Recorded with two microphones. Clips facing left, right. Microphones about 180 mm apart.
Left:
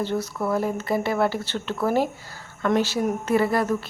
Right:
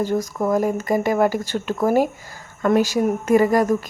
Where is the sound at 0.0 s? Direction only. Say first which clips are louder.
Right 4 dB; 10° right (ahead or behind).